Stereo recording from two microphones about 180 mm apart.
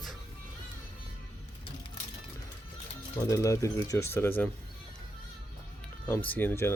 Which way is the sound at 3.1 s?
15° left (ahead or behind).